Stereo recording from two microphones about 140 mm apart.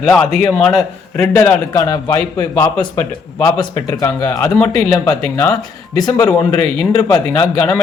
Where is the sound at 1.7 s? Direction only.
25° left (ahead or behind).